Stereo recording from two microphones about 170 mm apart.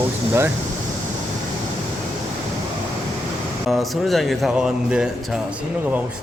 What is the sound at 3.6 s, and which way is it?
Speech, centre (ahead or behind).